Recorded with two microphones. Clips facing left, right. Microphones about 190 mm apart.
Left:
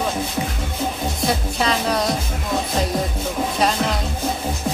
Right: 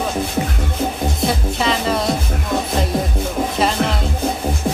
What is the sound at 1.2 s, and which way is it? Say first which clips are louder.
Music: right 1 dB; centre (ahead or behind).